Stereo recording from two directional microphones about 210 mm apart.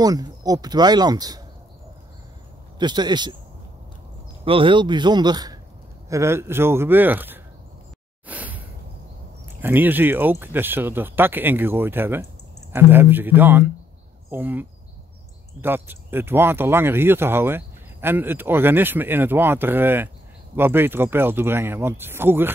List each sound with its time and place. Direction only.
0.0 s speech: 15° right (ahead or behind)
2.8 s speech: 20° right (ahead or behind)
4.5 s speech: 25° right (ahead or behind)
8.3 s a sound: 5° right (ahead or behind)
9.6 s speech: 10° right (ahead or behind)